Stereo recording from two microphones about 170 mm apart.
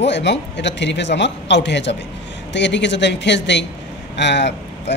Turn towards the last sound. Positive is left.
turn(degrees=90)